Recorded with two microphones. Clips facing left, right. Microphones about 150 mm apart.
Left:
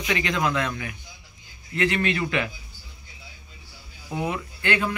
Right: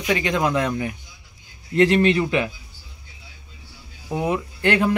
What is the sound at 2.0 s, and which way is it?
Speech, 20° right (ahead or behind).